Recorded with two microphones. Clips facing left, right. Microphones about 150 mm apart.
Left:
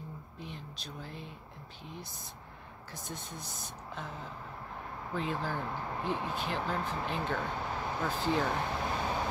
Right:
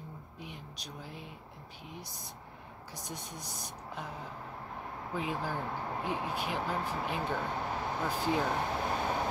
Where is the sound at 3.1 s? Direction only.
15° right (ahead or behind).